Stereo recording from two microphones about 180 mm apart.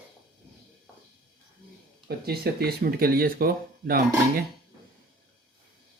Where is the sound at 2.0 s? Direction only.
60° right (ahead or behind).